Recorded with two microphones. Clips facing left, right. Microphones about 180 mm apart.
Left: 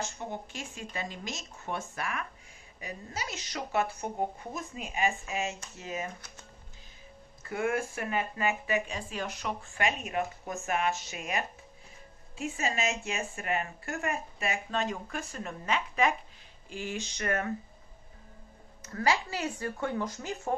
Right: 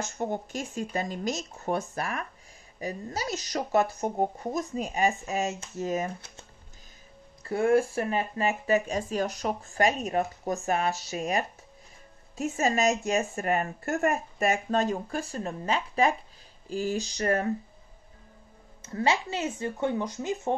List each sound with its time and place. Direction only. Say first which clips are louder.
0.0 s speech: right 6 dB; 45° right (ahead or behind)
7.4 s speech: right 8 dB; 35° right (ahead or behind)
18.8 s speech: right 2 dB; 25° right (ahead or behind)